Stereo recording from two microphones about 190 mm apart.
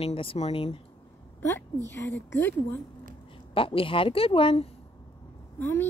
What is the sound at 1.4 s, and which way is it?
A woman's voice, 10° left (ahead or behind).